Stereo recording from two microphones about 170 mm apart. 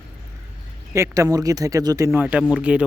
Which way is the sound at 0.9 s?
15° right (ahead or behind).